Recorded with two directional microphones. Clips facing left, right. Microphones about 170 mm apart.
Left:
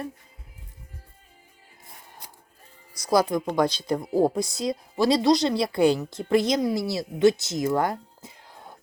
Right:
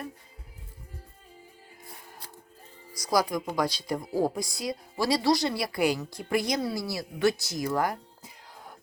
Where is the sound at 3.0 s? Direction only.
25° left (ahead or behind).